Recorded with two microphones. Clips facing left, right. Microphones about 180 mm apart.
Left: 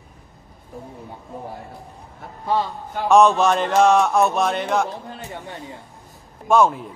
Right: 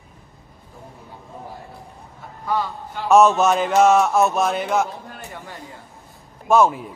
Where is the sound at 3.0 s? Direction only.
Centre (ahead or behind).